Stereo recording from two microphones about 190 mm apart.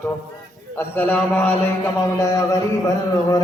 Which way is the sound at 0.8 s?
10° left (ahead or behind).